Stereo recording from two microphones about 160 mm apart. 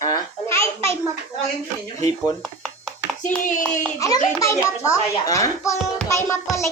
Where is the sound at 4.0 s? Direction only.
20° left (ahead or behind).